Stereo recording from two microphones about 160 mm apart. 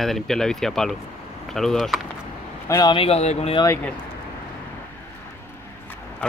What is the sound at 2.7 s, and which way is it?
Speech, 30° left (ahead or behind).